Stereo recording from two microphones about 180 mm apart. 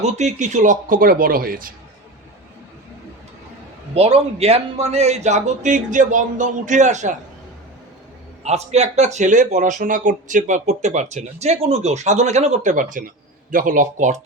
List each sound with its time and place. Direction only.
0.0 s speech: 40° right (ahead or behind)
3.9 s speech: 35° right (ahead or behind)
8.4 s speech: 35° right (ahead or behind)